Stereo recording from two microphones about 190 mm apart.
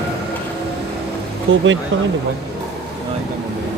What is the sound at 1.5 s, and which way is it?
Speech, 90° right.